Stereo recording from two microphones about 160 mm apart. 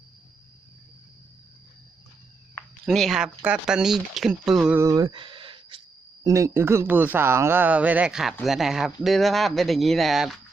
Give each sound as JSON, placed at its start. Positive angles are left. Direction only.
{"t": 2.8, "sound": "speech", "side_deg": 0}
{"t": 4.8, "sound": "a sound", "side_deg": -20}
{"t": 6.2, "sound": "speech", "side_deg": -20}